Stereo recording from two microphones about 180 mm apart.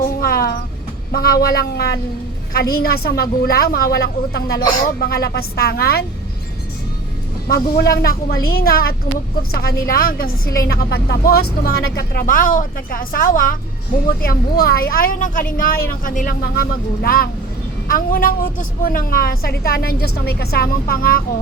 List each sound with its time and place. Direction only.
0.0 s a sound: 55° left (ahead or behind)
1.1 s a woman's voice: 55° left (ahead or behind)
7.4 s a woman's voice: 60° left (ahead or behind)